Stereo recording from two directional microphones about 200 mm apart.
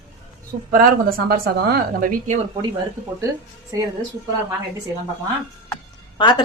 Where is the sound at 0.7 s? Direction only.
50° right (ahead or behind).